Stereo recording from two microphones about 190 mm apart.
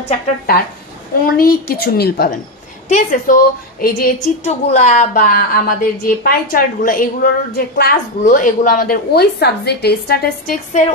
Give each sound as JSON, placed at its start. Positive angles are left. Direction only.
{"t": 1.3, "sound": "a woman's voice", "side_deg": 55}
{"t": 2.9, "sound": "a woman's voice", "side_deg": 45}